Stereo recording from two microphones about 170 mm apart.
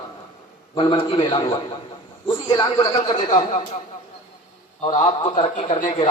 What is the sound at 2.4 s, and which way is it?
A man's voice, 30° left (ahead or behind).